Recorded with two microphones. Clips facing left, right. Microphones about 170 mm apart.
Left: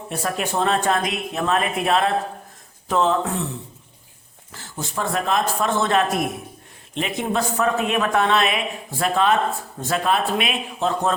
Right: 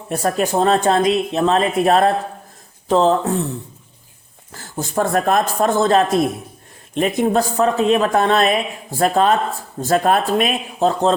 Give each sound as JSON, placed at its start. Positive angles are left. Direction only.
{"t": 0.1, "sound": "speech", "side_deg": -40}
{"t": 4.5, "sound": "a man's voice", "side_deg": -45}
{"t": 6.9, "sound": "speech", "side_deg": -45}